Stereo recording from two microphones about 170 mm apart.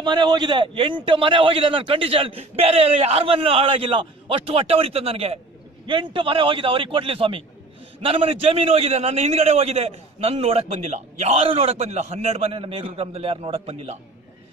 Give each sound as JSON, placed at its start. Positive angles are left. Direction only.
{"t": 0.0, "sound": "a man's voice", "side_deg": -25}